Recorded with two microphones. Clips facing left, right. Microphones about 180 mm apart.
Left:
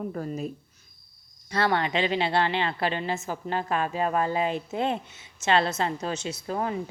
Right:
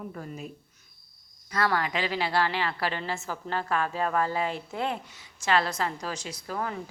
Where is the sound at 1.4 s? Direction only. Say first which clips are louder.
Left 2 dB; 25° left (ahead or behind).